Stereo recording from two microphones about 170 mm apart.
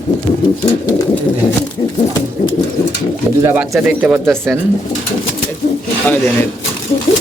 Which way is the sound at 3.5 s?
5° right (ahead or behind).